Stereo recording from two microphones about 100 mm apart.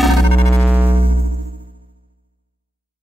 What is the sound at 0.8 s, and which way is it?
Music, 70° right (ahead or behind).